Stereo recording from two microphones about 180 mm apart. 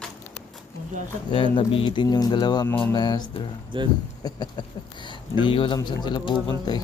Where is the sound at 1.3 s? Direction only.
30° left (ahead or behind).